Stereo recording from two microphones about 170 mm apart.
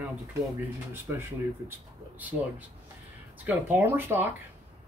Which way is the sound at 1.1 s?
15° right (ahead or behind).